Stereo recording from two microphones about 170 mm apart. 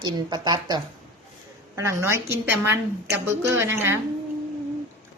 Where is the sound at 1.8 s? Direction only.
15° right (ahead or behind).